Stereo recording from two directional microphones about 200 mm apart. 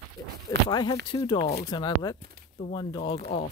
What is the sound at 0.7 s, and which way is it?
Speech, 20° left (ahead or behind).